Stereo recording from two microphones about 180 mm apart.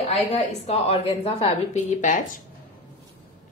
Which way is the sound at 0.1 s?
35° left (ahead or behind).